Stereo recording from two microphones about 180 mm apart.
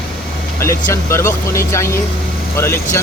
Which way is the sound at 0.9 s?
15° left (ahead or behind).